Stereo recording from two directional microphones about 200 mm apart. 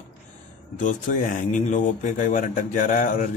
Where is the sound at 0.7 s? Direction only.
40° left (ahead or behind).